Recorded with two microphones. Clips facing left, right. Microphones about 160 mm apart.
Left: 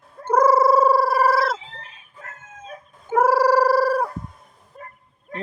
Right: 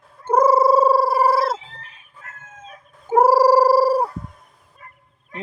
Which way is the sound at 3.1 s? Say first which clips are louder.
Right 3 dB; 35° right (ahead or behind).